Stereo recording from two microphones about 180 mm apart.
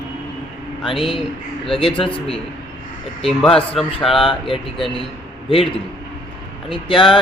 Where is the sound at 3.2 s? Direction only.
Centre (ahead or behind).